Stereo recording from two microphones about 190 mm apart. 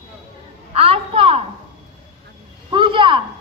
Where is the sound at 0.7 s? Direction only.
30° right (ahead or behind).